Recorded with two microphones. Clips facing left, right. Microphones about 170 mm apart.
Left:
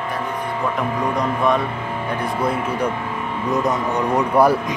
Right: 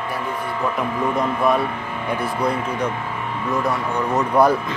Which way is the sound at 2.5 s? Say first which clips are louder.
Left 2 dB; 10° left (ahead or behind).